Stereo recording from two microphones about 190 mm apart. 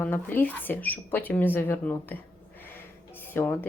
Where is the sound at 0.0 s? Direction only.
10° left (ahead or behind).